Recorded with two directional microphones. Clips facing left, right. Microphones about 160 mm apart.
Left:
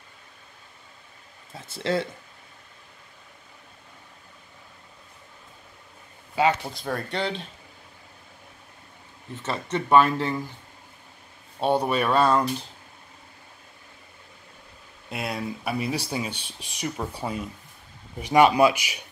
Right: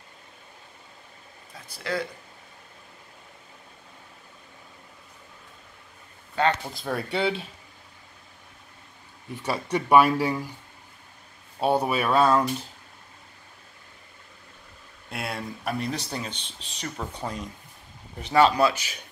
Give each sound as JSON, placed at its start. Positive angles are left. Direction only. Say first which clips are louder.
{"t": 1.5, "sound": "speech", "louder": "left 5 dB", "side_deg": 25}
{"t": 6.3, "sound": "speech", "louder": "left 2 dB", "side_deg": 10}
{"t": 9.3, "sound": "speech", "louder": "right 1 dB", "side_deg": -15}
{"t": 11.6, "sound": "speech", "louder": "left 1 dB", "side_deg": -5}
{"t": 15.0, "sound": "speech", "louder": "left 3 dB", "side_deg": 0}